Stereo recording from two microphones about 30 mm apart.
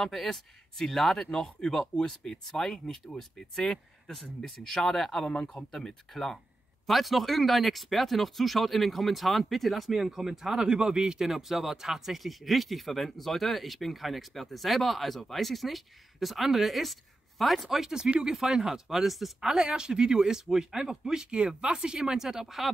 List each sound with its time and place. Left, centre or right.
0.0 s speech: centre
1.2 s speech: centre
5.6 s speech: left
6.1 s speech: centre
6.9 s speech: centre
10.1 s speech: centre
10.6 s speech: right; by 17.8 s centre
17.8 s speech: centre
19.5 s speech: right
20.3 s speech: centre